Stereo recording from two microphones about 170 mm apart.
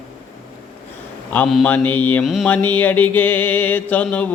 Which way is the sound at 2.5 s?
10° left (ahead or behind).